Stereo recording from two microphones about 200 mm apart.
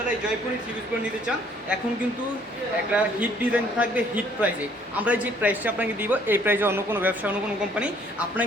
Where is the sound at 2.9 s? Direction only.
5° right (ahead or behind).